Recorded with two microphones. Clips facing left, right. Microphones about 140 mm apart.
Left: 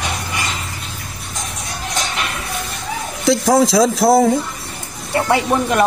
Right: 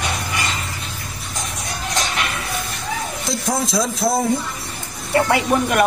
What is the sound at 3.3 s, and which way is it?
Speech, 90° left.